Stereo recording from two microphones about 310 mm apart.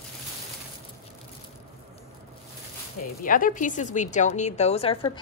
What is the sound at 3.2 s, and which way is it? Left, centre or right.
A woman's voice, left.